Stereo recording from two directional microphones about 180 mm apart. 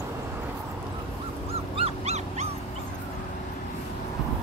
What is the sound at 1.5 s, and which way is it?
Dog, 35° right (ahead or behind).